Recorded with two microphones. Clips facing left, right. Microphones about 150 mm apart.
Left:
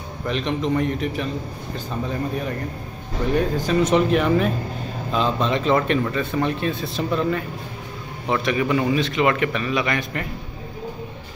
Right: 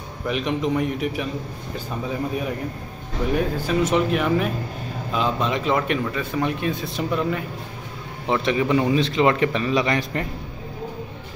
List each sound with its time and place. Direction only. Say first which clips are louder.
0.3 s speech: even; 5° right (ahead or behind)
8.3 s a man's voice: right 1 dB; 25° right (ahead or behind)